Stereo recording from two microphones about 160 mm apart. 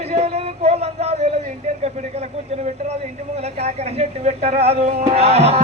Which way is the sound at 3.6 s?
45° right (ahead or behind).